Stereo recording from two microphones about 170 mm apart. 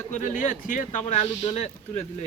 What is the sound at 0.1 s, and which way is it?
Speech, 50° left (ahead or behind).